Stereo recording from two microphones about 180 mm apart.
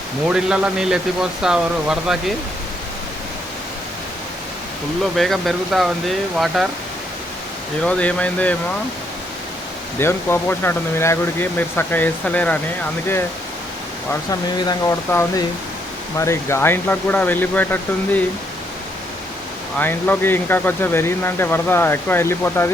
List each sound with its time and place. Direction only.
0.3 s speech: 5° right (ahead or behind)
5.1 s speech: centre (ahead or behind)
7.9 s speech: 5° left (ahead or behind)
10.0 s speech: 15° left (ahead or behind)
14.3 s speech: 20° left (ahead or behind)
19.8 s speech: 10° left (ahead or behind)